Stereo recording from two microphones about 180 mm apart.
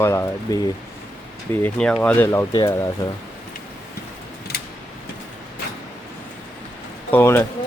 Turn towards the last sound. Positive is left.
turn(degrees=10)  # may be behind; listen again after turning